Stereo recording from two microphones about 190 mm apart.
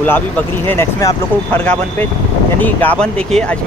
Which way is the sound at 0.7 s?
15° left (ahead or behind).